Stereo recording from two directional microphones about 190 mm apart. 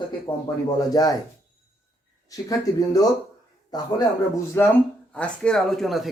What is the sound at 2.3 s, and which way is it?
Speech, 20° left (ahead or behind).